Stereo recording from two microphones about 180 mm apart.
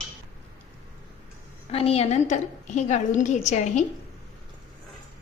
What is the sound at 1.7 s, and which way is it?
A woman's voice, 35° left (ahead or behind).